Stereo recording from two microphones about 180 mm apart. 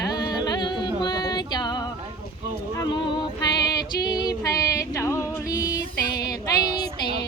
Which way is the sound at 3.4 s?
25° left (ahead or behind).